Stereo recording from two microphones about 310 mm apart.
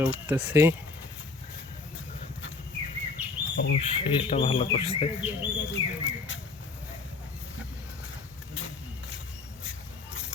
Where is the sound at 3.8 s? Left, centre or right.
Centre.